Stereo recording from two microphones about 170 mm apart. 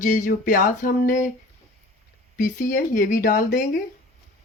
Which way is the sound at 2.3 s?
50° left (ahead or behind).